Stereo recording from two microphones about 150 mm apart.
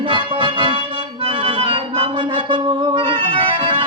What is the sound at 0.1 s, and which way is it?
Music, 35° right (ahead or behind).